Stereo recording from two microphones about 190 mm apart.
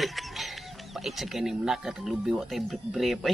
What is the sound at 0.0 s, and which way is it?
Chicken, centre (ahead or behind).